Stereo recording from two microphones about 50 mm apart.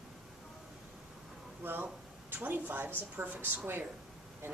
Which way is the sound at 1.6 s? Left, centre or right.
Right.